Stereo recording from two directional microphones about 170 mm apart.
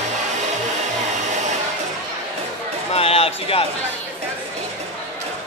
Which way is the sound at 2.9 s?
35° left (ahead or behind).